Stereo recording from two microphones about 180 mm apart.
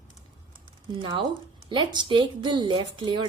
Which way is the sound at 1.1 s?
25° right (ahead or behind).